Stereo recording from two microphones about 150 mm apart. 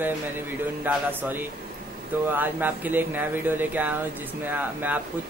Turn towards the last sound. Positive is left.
turn(degrees=-10)  # may be behind; listen again after turning